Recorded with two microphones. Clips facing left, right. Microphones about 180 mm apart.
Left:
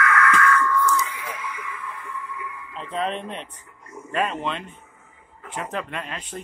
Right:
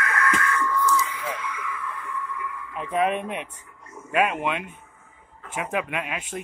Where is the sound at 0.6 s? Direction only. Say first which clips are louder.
Left 2 dB; 20° right (ahead or behind).